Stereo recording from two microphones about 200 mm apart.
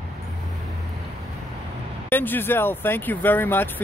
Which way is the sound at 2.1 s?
10° left (ahead or behind).